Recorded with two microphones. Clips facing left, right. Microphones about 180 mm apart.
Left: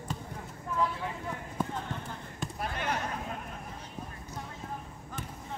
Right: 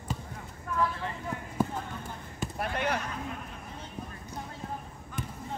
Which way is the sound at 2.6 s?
60° right (ahead or behind).